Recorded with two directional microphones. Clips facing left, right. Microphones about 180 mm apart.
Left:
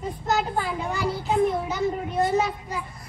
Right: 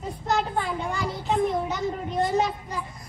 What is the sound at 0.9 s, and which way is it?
A child's voice, centre (ahead or behind).